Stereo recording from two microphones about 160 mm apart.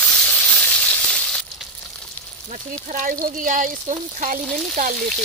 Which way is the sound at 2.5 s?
55° right (ahead or behind).